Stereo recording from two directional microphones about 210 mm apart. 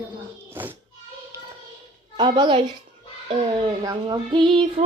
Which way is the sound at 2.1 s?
20° right (ahead or behind).